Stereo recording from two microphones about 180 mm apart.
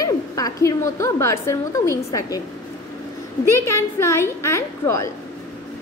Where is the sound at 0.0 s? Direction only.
20° left (ahead or behind).